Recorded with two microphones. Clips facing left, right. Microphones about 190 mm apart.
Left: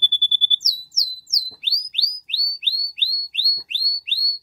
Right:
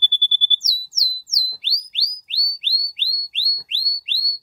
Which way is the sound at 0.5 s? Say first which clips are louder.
Right 2 dB; 25° right (ahead or behind).